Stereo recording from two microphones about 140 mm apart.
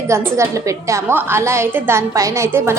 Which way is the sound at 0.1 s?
20° right (ahead or behind).